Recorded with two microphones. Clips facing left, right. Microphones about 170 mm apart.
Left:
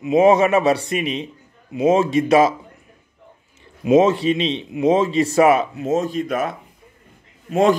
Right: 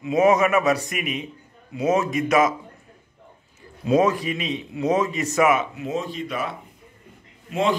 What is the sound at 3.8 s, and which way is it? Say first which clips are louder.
A man's voice: left 5 dB; 25° left (ahead or behind).